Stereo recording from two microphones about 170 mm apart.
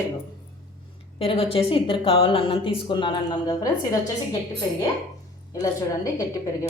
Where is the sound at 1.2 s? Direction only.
35° left (ahead or behind).